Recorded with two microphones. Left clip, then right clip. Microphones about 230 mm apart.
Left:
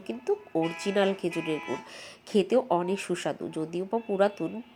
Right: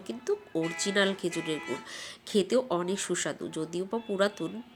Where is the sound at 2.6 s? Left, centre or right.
Centre.